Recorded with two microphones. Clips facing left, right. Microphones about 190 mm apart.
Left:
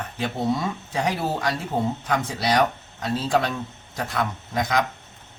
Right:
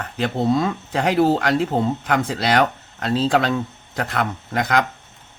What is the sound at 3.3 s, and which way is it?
Speech, 90° right.